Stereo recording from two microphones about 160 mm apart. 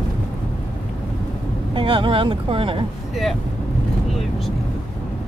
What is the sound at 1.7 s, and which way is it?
Speech, 30° right (ahead or behind).